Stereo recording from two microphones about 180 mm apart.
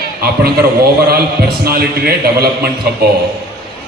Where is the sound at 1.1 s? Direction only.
60° right (ahead or behind).